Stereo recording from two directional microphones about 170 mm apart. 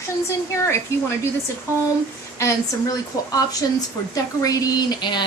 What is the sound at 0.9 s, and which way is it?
Speech, 15° left (ahead or behind).